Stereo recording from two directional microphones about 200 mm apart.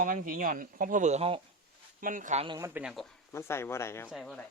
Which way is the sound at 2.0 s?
45° right (ahead or behind).